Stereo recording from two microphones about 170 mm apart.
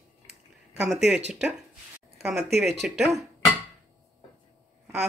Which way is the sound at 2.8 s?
5° right (ahead or behind).